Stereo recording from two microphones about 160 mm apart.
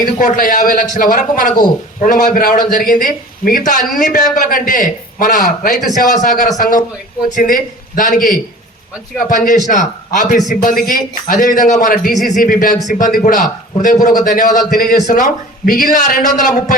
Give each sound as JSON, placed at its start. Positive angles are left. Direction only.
{"t": 0.0, "sound": "a man's voice", "side_deg": 55}